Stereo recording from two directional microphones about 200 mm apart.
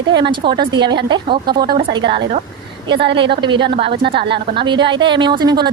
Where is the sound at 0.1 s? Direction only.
25° right (ahead or behind).